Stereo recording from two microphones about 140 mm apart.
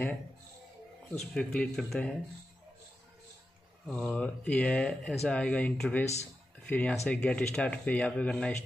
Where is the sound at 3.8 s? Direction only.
5° left (ahead or behind).